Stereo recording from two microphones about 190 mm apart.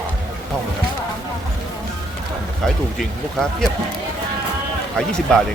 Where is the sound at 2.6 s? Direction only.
5° left (ahead or behind).